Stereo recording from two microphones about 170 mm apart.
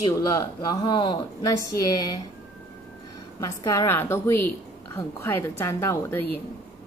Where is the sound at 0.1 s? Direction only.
20° left (ahead or behind).